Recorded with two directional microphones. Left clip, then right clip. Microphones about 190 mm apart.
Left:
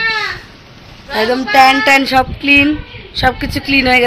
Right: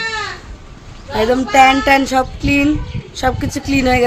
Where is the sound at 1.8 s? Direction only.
10° right (ahead or behind).